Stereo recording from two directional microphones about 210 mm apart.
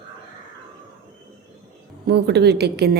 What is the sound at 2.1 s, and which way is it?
Speech, 50° right (ahead or behind).